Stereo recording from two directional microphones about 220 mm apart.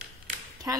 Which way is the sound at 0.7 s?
15° right (ahead or behind).